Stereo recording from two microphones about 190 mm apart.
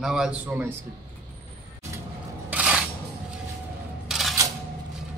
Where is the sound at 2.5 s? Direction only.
5° right (ahead or behind).